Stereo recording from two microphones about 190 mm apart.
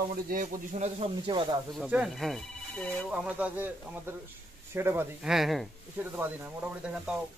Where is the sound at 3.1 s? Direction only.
5° right (ahead or behind).